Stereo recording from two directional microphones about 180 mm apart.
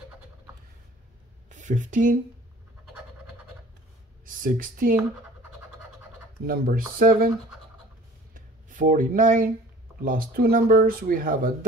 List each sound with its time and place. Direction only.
1.5 s speech: 45° right (ahead or behind)
4.3 s speech: 50° right (ahead or behind)
6.4 s speech: 55° right (ahead or behind)
8.4 s speech: 50° right (ahead or behind)